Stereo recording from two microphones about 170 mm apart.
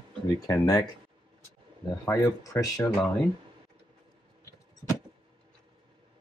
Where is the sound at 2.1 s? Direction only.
20° left (ahead or behind).